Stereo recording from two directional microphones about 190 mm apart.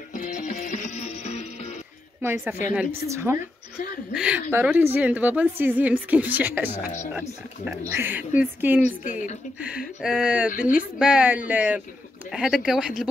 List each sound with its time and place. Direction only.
0.1 s music: 40° left (ahead or behind)
2.2 s a woman's voice: 10° right (ahead or behind)
9.0 s speech: 40° left (ahead or behind)
9.6 s a woman's voice: 5° right (ahead or behind)